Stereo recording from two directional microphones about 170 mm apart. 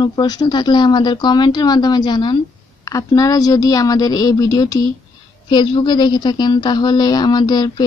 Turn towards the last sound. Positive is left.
turn(degrees=25)  # may be behind; listen again after turning